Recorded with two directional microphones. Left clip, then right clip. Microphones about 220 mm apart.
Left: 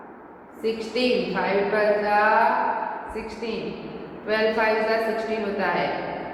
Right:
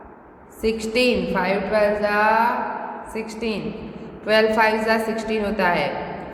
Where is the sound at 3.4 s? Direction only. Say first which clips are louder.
Right 3 dB; 50° right (ahead or behind).